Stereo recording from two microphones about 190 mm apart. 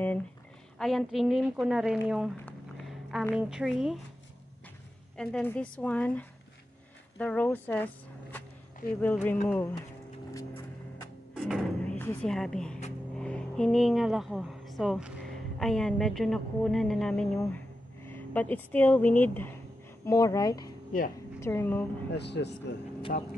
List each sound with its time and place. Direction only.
0.7 s a woman's voice: centre (ahead or behind)
2.4 s a sound: centre (ahead or behind)
3.3 s a woman's voice: 5° right (ahead or behind)
5.1 s a woman's voice: 5° left (ahead or behind)
10.3 s vehicle: 15° left (ahead or behind)
11.3 s a sound: centre (ahead or behind)
13.2 s a woman's voice: 5° left (ahead or behind)
22.1 s speech: 60° left (ahead or behind)
23.1 s speech: 50° left (ahead or behind)